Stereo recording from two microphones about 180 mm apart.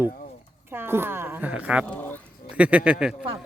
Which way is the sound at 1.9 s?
10° left (ahead or behind).